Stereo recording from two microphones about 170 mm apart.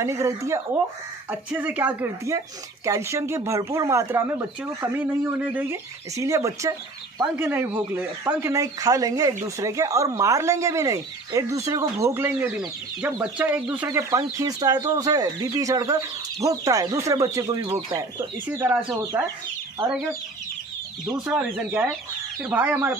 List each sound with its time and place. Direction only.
0.0 s speech: 15° right (ahead or behind)
13.8 s speech: 20° right (ahead or behind)
17.6 s speech: 30° right (ahead or behind)
18.5 s speech: 10° right (ahead or behind)
21.3 s speech: 5° right (ahead or behind)